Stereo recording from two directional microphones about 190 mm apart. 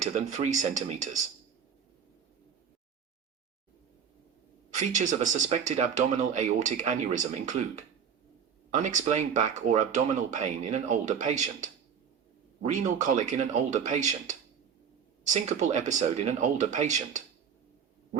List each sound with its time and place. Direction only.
0.0 s speech: 40° right (ahead or behind)
4.7 s speech: 40° right (ahead or behind)
8.7 s speech: 40° right (ahead or behind)